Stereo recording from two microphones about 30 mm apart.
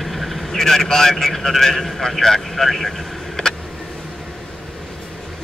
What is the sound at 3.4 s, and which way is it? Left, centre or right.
Vehicle, left.